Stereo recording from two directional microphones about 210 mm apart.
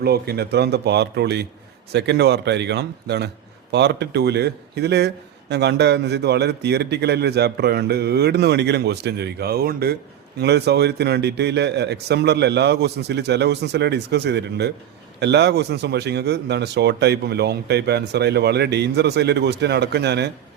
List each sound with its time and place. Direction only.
0.0 s speech: 50° right (ahead or behind)